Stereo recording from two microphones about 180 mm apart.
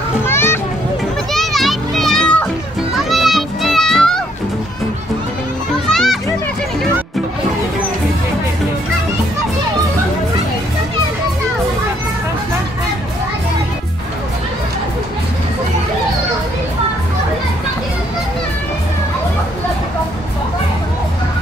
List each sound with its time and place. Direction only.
0.2 s children playing: 15° left (ahead or behind)
1.3 s children playing: centre (ahead or behind)
2.9 s music: centre (ahead or behind)
5.9 s children playing: centre (ahead or behind)